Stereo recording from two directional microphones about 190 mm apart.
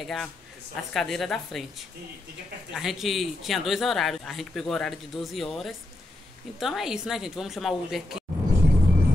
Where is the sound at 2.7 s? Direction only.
Centre (ahead or behind).